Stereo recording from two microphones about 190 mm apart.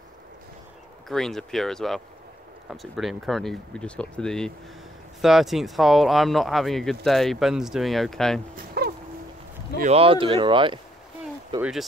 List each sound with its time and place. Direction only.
1.0 s speech: centre (ahead or behind)
8.8 s a sound: 55° right (ahead or behind)
9.8 s speech: 35° right (ahead or behind)